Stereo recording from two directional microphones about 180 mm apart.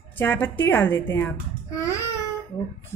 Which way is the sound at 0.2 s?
10° left (ahead or behind).